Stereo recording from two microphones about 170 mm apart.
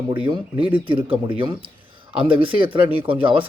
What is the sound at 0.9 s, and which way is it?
A man's voice, 30° right (ahead or behind).